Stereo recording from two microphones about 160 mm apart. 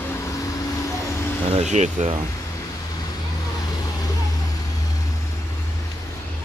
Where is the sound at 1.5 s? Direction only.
45° right (ahead or behind).